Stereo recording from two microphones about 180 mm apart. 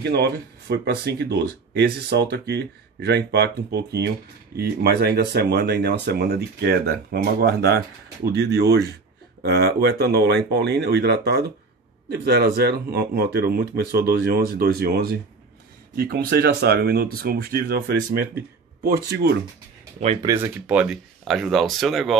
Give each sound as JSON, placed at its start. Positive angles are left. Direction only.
{"t": 0.0, "sound": "speech", "side_deg": -65}
{"t": 20.2, "sound": "speech", "side_deg": -15}